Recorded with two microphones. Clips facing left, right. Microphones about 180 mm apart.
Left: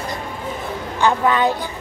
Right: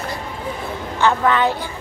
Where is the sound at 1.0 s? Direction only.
15° left (ahead or behind).